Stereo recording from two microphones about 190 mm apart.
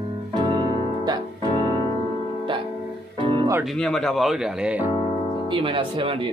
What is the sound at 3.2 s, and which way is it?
Music, 25° right (ahead or behind).